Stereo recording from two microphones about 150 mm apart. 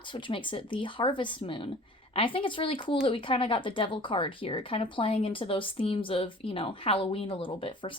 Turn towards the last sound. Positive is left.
turn(degrees=35)  # may be behind; listen again after turning